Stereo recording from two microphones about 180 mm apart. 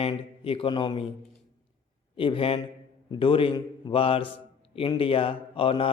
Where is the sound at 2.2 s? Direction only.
30° left (ahead or behind).